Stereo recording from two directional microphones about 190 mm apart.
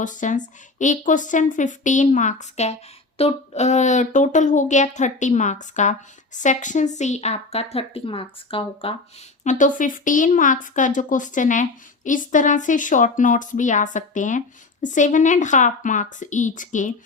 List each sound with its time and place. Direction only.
0.0 s a woman's voice: 40° left (ahead or behind)
9.4 s a woman's voice: 40° left (ahead or behind)